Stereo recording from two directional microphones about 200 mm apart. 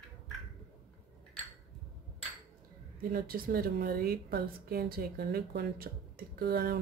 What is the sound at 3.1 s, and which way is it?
Speech, 45° right (ahead or behind).